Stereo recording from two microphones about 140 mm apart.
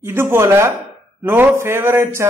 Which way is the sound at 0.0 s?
15° right (ahead or behind).